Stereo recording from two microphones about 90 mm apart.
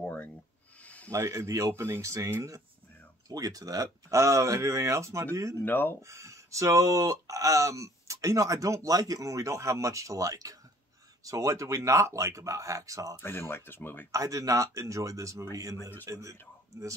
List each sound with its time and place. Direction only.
0.0 s a sound: 15° left (ahead or behind)
1.1 s speech: 35° right (ahead or behind)
5.7 s speech: 20° left (ahead or behind)
6.0 s speech: 35° right (ahead or behind)
13.2 s speech: 25° left (ahead or behind)
14.1 s speech: 40° right (ahead or behind)